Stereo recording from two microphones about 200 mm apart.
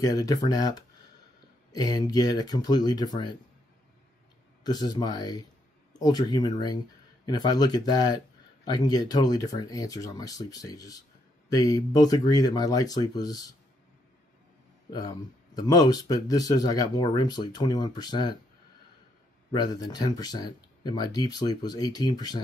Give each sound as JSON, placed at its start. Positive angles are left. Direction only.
{"t": 0.0, "sound": "speech", "side_deg": 15}
{"t": 4.6, "sound": "speech", "side_deg": 20}
{"t": 14.9, "sound": "speech", "side_deg": 20}
{"t": 19.5, "sound": "speech", "side_deg": 20}